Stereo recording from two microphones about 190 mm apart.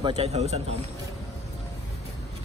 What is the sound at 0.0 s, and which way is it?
Speech, 35° right (ahead or behind).